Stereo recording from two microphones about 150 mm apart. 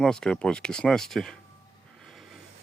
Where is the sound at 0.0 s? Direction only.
5° left (ahead or behind).